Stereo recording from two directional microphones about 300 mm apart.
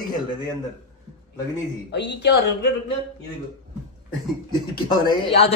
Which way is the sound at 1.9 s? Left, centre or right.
Left.